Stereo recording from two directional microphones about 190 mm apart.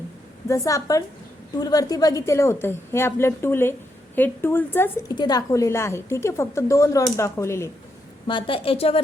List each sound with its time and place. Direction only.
0.4 s a woman's voice: 15° left (ahead or behind)
5.1 s a woman's voice: 20° left (ahead or behind)
8.3 s a woman's voice: 25° left (ahead or behind)